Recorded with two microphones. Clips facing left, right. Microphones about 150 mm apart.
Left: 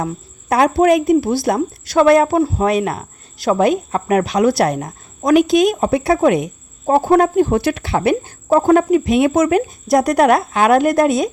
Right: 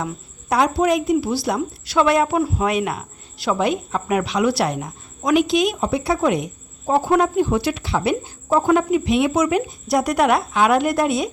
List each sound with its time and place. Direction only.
0.0 s a woman's voice: 50° left (ahead or behind)